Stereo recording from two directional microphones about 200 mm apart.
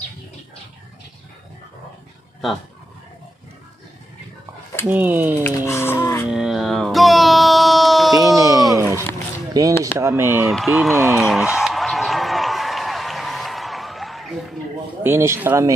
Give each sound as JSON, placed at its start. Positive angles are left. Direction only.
{"t": 4.8, "sound": "speech", "side_deg": -10}
{"t": 5.7, "sound": "music", "side_deg": 10}
{"t": 6.3, "sound": "music", "side_deg": 0}
{"t": 8.4, "sound": "music", "side_deg": -15}
{"t": 8.7, "sound": "a sound", "side_deg": -15}
{"t": 9.5, "sound": "speech", "side_deg": -15}
{"t": 10.5, "sound": "a sound", "side_deg": 0}
{"t": 15.0, "sound": "speech", "side_deg": -10}